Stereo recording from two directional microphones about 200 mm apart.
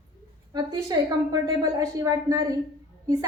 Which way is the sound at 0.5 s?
20° right (ahead or behind).